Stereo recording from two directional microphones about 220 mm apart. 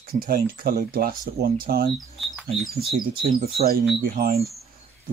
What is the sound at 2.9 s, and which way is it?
Speech, 40° right (ahead or behind).